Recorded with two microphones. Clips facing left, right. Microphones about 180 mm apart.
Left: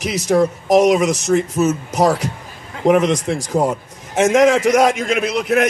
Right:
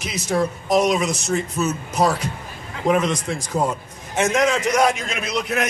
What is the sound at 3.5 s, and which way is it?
A man's voice, 40° left (ahead or behind).